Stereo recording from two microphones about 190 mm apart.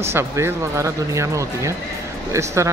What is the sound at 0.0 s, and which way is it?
Speech, 15° right (ahead or behind).